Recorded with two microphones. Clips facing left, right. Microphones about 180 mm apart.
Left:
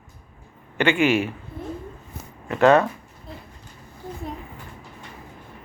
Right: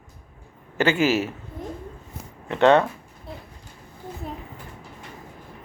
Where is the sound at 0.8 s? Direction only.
40° right (ahead or behind).